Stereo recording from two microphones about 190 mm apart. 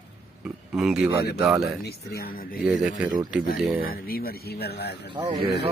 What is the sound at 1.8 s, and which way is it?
Speech, 55° left (ahead or behind).